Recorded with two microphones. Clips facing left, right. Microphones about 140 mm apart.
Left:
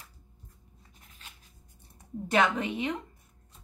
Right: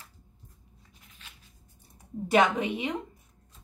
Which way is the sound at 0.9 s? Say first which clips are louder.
Left 1 dB; 40° left (ahead or behind).